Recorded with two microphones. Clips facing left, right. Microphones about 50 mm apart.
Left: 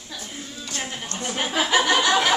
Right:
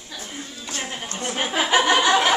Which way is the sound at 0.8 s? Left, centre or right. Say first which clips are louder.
Right 2 dB; centre.